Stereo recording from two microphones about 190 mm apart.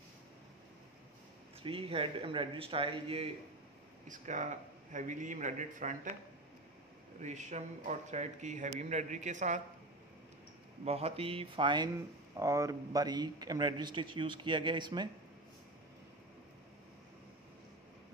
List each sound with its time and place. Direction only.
1.6 s speech: 30° right (ahead or behind)
4.1 s speech: 40° right (ahead or behind)
7.2 s speech: 40° right (ahead or behind)
10.9 s speech: 30° right (ahead or behind)